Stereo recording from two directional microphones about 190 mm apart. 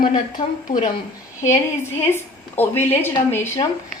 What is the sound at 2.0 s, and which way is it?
Speech, 10° left (ahead or behind).